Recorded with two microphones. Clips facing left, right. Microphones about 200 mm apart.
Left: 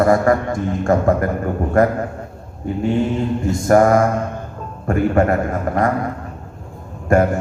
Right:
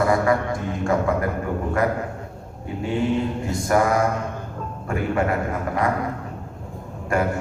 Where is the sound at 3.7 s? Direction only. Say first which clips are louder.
Left 7 dB; 45° left (ahead or behind).